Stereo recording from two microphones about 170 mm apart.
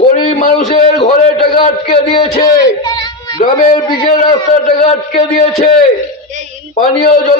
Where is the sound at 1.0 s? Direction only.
30° left (ahead or behind).